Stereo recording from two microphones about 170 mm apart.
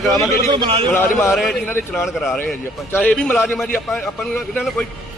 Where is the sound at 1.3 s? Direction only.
Centre (ahead or behind).